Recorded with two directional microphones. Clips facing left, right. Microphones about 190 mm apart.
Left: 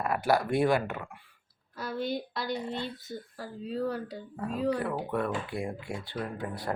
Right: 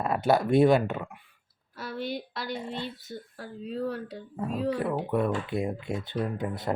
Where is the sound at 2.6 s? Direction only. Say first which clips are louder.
Even; 25° right (ahead or behind).